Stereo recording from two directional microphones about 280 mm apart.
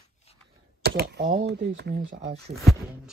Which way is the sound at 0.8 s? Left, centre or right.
Right.